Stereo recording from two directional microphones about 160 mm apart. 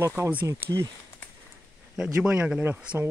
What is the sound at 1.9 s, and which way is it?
Speech, 5° right (ahead or behind).